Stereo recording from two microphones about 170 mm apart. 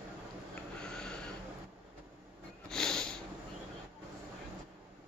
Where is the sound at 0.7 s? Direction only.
5° left (ahead or behind).